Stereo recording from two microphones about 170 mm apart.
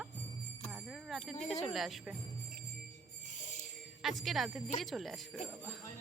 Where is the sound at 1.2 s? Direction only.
40° left (ahead or behind).